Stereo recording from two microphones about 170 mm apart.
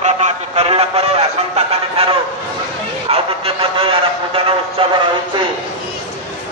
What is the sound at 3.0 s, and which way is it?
Speech, 35° right (ahead or behind).